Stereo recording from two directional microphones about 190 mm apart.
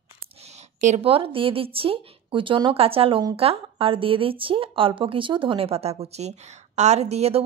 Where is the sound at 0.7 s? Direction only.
35° right (ahead or behind).